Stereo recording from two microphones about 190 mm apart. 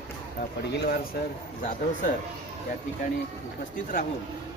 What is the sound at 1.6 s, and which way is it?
Speech, 45° left (ahead or behind).